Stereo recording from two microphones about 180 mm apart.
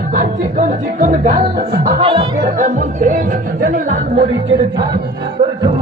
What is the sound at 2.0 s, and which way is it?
Music, 30° right (ahead or behind).